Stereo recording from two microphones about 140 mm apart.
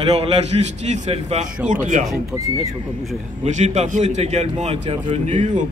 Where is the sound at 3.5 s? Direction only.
55° right (ahead or behind).